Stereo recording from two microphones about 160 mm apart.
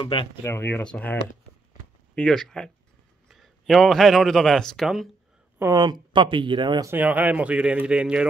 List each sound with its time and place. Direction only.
0.0 s speech: 35° left (ahead or behind)
0.4 s speech: 15° left (ahead or behind)
2.1 s a man's voice: 5° left (ahead or behind)
5.6 s speech: 25° right (ahead or behind)
6.9 s speech: 10° right (ahead or behind)